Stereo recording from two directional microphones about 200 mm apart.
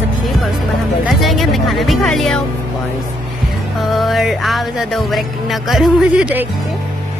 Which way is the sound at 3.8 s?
Centre (ahead or behind).